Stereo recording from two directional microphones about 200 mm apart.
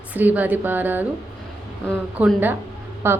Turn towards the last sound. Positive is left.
turn(degrees=-10)  # may be behind; listen again after turning